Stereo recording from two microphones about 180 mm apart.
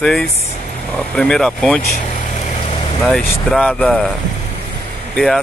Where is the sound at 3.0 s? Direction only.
5° left (ahead or behind).